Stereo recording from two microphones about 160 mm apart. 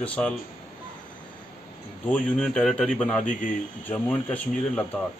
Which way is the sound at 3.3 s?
55° left (ahead or behind).